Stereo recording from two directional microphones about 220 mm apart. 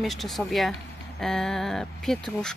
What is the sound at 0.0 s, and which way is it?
Speech, centre (ahead or behind).